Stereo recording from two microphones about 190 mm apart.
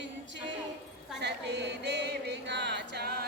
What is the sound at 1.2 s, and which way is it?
Music, 65° right (ahead or behind).